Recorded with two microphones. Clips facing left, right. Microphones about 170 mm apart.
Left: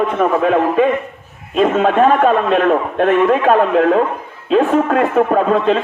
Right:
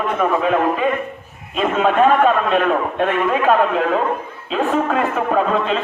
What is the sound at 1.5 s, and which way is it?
A man's voice, 45° left (ahead or behind).